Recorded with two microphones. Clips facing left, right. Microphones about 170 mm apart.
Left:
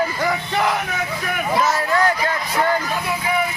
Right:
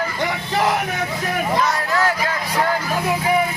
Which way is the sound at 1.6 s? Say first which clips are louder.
Left 1 dB; centre (ahead or behind).